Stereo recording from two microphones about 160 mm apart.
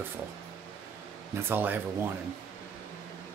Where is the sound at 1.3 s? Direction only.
15° right (ahead or behind).